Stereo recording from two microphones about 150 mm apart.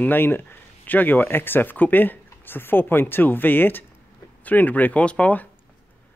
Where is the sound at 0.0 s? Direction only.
15° left (ahead or behind).